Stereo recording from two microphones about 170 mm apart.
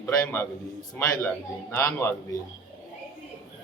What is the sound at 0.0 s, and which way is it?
A man's voice, 15° left (ahead or behind).